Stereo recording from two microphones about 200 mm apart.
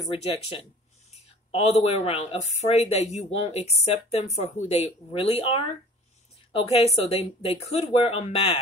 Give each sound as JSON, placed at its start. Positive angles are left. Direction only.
{"t": 0.0, "sound": "speech", "side_deg": 30}